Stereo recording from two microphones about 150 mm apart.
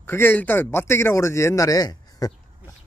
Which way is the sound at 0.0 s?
15° left (ahead or behind).